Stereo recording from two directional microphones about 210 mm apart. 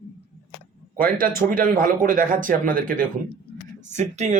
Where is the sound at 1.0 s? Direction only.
40° right (ahead or behind).